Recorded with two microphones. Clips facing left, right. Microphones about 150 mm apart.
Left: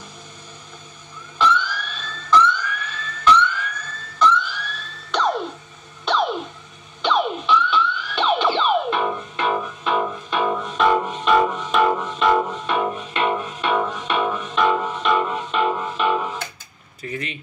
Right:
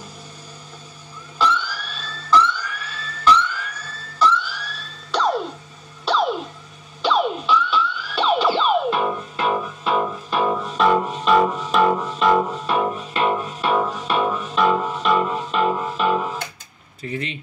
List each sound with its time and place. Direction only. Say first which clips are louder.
1.4 s siren: left 1 dB; 35° right (ahead or behind)
6.1 s music: right 1 dB; 5° right (ahead or behind)
17.0 s speech: right 2 dB; 25° right (ahead or behind)